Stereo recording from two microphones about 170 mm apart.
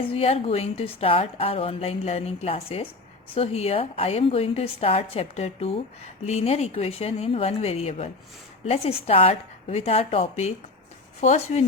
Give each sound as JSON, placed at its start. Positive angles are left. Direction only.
{"t": 0.0, "sound": "a woman's voice", "side_deg": 35}